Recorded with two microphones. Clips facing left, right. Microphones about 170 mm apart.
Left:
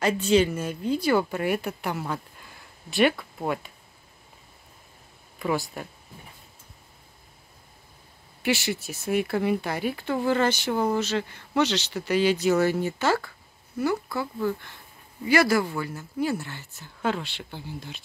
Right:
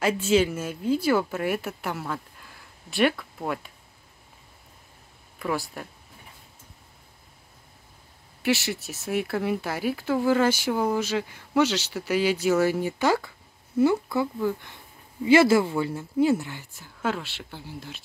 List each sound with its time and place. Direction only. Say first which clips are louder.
0.0 s speech: left 1 dB; 5° right (ahead or behind)
5.4 s speech: left 2 dB; centre (ahead or behind)
8.4 s speech: right 1 dB; centre (ahead or behind)